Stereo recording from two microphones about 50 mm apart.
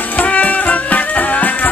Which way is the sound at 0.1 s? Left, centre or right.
Left.